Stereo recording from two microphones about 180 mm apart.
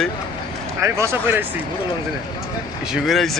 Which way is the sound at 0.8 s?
15° right (ahead or behind).